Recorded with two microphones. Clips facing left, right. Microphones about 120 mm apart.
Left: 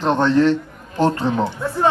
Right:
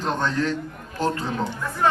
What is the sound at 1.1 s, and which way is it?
Speech, 35° left (ahead or behind).